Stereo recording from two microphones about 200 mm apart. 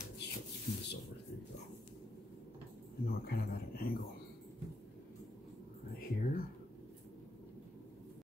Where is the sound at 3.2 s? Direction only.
50° left (ahead or behind).